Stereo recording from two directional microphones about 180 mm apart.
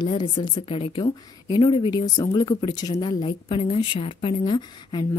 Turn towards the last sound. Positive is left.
turn(degrees=25)  # may be behind; listen again after turning